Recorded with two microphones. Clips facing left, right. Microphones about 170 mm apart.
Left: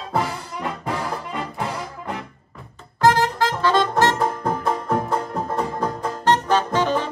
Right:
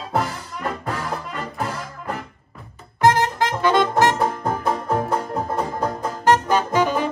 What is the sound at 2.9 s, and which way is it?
Music, 20° right (ahead or behind).